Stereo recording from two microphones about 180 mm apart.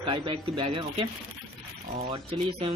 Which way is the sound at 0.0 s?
30° right (ahead or behind).